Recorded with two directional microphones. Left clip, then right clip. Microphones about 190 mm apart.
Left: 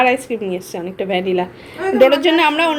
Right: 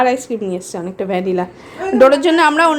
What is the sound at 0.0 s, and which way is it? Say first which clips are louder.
A woman's voice: even; 15° right (ahead or behind).